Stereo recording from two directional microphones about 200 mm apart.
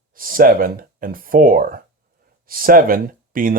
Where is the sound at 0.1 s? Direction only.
45° right (ahead or behind).